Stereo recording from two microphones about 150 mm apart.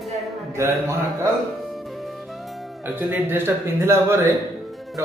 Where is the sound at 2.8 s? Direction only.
10° right (ahead or behind).